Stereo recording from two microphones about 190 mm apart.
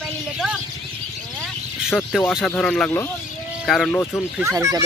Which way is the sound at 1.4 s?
Centre (ahead or behind).